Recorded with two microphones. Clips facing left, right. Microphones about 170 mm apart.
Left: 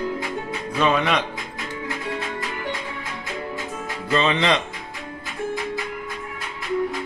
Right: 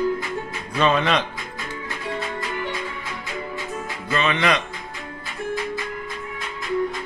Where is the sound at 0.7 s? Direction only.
10° left (ahead or behind).